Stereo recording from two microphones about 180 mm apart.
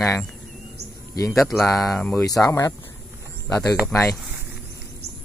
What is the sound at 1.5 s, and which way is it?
Speech, centre (ahead or behind).